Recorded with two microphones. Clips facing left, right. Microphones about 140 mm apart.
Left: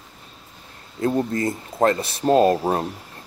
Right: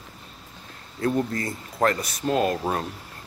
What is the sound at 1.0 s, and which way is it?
Speech, 25° left (ahead or behind).